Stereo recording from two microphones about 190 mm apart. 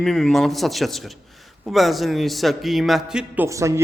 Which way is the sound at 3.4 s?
15° right (ahead or behind).